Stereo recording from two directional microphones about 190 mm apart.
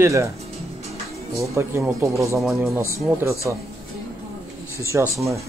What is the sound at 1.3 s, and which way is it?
Speech, 15° right (ahead or behind).